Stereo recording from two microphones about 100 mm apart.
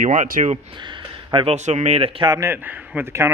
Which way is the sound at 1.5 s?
90° right.